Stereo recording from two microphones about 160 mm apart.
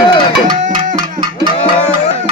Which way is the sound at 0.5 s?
55° right (ahead or behind).